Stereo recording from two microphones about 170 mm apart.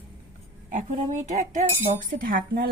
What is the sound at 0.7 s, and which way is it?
A woman's voice, 45° right (ahead or behind).